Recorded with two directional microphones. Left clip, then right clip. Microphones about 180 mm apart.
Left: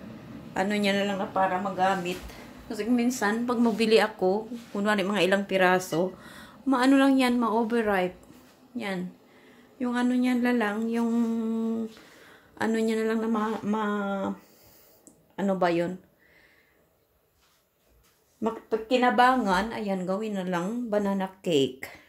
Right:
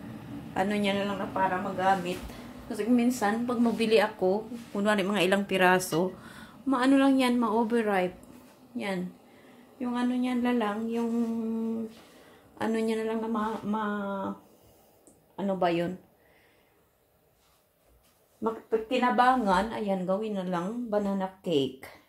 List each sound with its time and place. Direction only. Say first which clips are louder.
0.6 s a woman's voice: left 2 dB; 15° left (ahead or behind)
2.7 s a woman's voice: even; 10° left (ahead or behind)
9.8 s speech: left 3 dB; 25° left (ahead or behind)
12.5 s speech: left 2 dB; 20° left (ahead or behind)
15.3 s speech: left 3 dB; 35° left (ahead or behind)
15.6 s a woman's voice: left 2 dB; 15° left (ahead or behind)
18.4 s speech: even; 25° left (ahead or behind)